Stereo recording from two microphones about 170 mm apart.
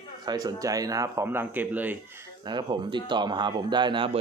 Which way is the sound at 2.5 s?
25° right (ahead or behind).